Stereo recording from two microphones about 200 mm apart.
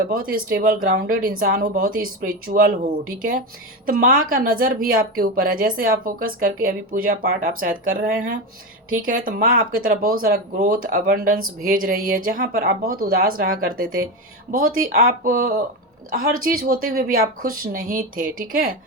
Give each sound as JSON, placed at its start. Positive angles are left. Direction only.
{"t": 0.1, "sound": "speech", "side_deg": -45}